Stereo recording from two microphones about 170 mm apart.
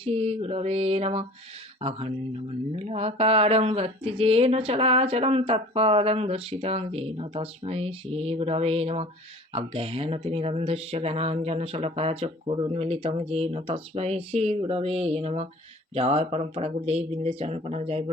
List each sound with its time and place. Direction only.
0.0 s speech: 35° right (ahead or behind)